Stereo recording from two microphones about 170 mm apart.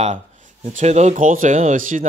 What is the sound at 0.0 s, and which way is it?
Speech, 45° right (ahead or behind).